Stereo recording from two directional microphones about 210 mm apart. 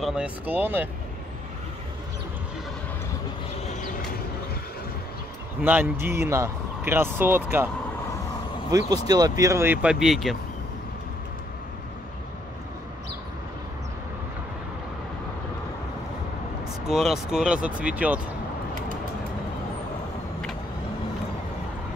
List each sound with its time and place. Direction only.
0.0 s speech: 5° right (ahead or behind)
5.6 s speech: 10° right (ahead or behind)
16.8 s speech: centre (ahead or behind)